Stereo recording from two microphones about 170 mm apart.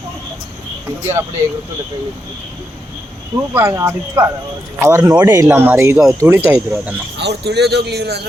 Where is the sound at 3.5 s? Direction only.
15° right (ahead or behind).